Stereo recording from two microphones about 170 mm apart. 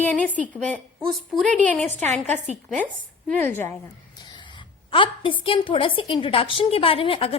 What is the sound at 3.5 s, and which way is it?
Speech, 10° left (ahead or behind).